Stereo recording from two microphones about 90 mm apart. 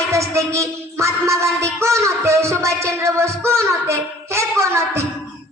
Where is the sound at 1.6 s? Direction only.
35° right (ahead or behind).